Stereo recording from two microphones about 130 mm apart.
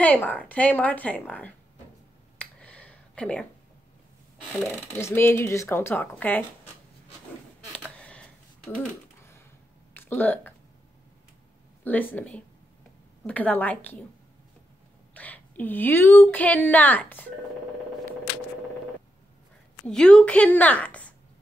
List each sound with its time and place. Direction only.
0.0 s a woman's voice: 10° left (ahead or behind)
2.3 s finger snapping: 10° left (ahead or behind)
4.9 s a woman's voice: 20° left (ahead or behind)
8.0 s typing: 10° left (ahead or behind)
9.9 s speech: 15° left (ahead or behind)
11.8 s a woman's voice: 15° left (ahead or behind)
15.1 s a woman's voice: 10° left (ahead or behind)
19.9 s a woman's voice: 5° left (ahead or behind)